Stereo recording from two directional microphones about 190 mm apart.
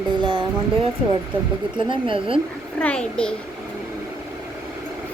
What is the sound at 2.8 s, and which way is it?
Speech, 5° left (ahead or behind).